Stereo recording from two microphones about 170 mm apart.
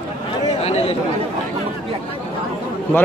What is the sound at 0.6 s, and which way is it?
Chatter, 35° left (ahead or behind).